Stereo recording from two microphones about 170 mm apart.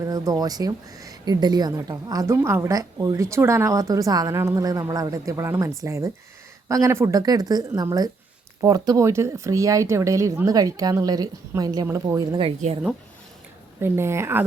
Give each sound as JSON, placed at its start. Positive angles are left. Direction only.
{"t": 0.0, "sound": "a woman's voice", "side_deg": -20}
{"t": 12.4, "sound": "speech", "side_deg": -35}
{"t": 13.8, "sound": "a woman's voice", "side_deg": -15}